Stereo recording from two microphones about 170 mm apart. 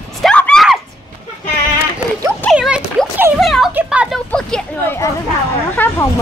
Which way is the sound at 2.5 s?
5° right (ahead or behind).